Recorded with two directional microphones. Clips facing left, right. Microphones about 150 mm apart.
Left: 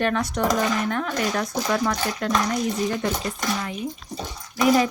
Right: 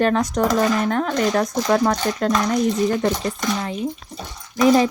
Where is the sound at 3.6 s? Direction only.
30° right (ahead or behind).